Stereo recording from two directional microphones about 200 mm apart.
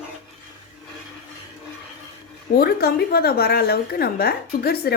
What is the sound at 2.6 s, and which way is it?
A woman's voice, 50° left (ahead or behind).